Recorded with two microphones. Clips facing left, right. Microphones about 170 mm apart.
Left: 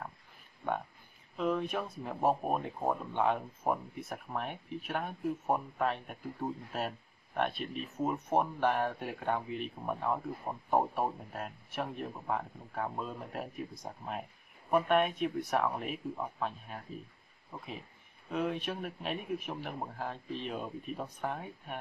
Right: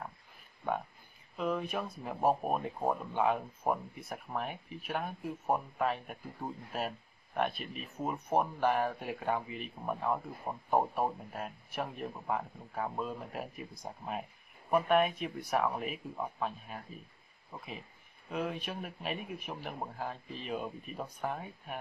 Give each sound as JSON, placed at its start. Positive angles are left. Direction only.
{"t": 1.3, "sound": "speech", "side_deg": 0}
{"t": 18.3, "sound": "speech", "side_deg": 0}